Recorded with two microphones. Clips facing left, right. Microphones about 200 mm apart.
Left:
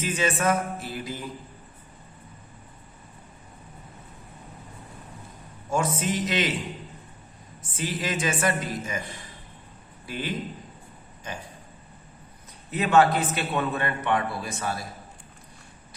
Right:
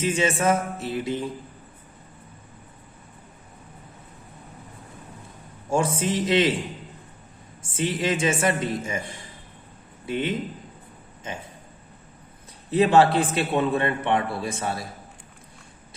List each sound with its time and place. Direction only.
0.0 s a man's voice: 25° right (ahead or behind)
5.7 s a man's voice: 30° right (ahead or behind)
7.6 s a man's voice: 25° right (ahead or behind)
10.1 s a man's voice: 25° right (ahead or behind)
12.7 s a man's voice: 30° right (ahead or behind)